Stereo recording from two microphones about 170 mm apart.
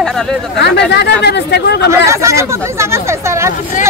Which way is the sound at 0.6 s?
85° left.